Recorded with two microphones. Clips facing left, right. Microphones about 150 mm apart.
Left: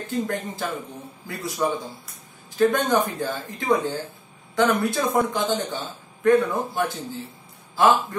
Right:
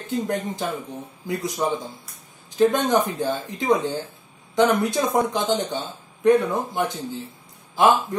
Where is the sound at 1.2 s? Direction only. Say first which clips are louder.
Right 1 dB; 20° right (ahead or behind).